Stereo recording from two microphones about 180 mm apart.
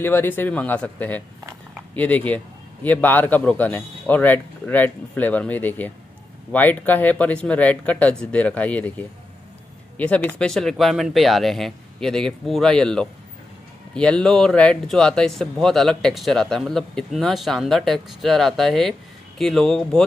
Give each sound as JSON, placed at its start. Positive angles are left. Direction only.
{"t": 0.0, "sound": "a man's voice", "side_deg": 10}